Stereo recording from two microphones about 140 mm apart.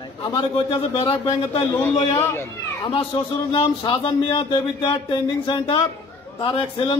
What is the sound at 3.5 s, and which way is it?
Speech, 35° left (ahead or behind).